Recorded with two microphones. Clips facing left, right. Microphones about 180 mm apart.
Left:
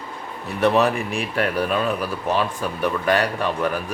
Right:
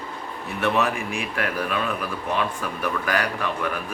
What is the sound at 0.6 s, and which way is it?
Speech, 35° left (ahead or behind).